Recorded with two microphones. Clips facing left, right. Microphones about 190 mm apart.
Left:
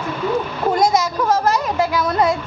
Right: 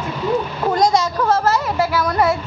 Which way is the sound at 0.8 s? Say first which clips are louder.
Right 2 dB; 10° left (ahead or behind).